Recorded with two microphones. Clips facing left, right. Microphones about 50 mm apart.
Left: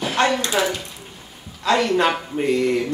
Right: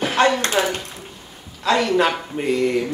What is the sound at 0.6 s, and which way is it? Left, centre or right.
Speech, right.